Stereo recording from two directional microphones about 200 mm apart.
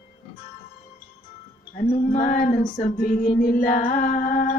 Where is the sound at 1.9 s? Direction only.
40° left (ahead or behind).